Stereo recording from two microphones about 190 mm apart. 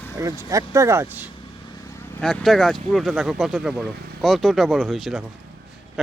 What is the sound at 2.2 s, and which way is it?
Speech, centre (ahead or behind).